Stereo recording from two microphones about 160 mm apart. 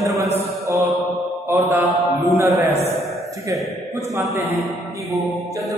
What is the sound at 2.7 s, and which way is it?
Speech, 40° right (ahead or behind).